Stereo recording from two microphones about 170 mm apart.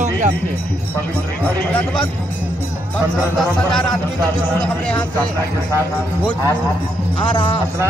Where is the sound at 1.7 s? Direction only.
10° left (ahead or behind).